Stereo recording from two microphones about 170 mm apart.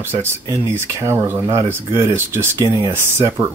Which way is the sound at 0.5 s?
15° right (ahead or behind).